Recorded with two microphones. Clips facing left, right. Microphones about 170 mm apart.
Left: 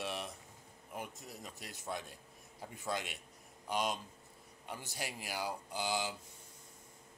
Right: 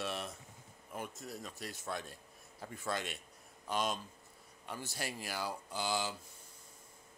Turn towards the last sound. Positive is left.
turn(degrees=15)  # may be behind; listen again after turning